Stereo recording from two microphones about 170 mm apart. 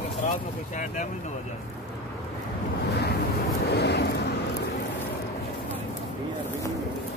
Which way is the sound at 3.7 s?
80° left.